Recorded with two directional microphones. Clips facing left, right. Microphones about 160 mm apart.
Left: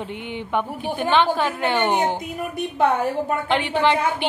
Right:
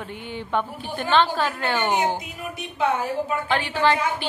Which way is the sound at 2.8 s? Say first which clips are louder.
Left 3 dB; 55° left (ahead or behind).